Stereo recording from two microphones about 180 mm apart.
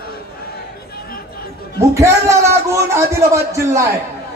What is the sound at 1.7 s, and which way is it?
A man's voice, 15° right (ahead or behind).